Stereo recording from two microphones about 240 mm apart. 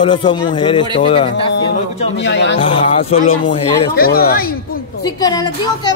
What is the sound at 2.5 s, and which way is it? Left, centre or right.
A man's voice, left.